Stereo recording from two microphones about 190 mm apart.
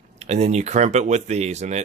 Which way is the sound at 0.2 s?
35° right (ahead or behind).